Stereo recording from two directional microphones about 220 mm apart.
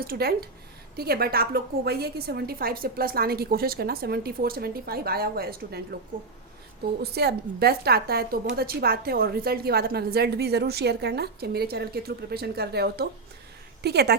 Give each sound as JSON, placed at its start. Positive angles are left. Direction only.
{"t": 0.0, "sound": "a woman's voice", "side_deg": -45}
{"t": 7.0, "sound": "a woman's voice", "side_deg": -45}